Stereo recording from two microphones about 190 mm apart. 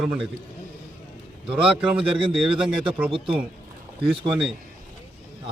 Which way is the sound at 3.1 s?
30° right (ahead or behind).